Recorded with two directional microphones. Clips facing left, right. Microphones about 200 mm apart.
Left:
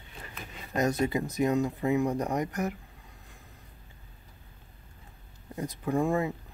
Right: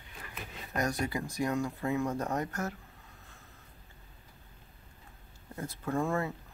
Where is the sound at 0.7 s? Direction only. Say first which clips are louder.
Left 6 dB; 20° left (ahead or behind).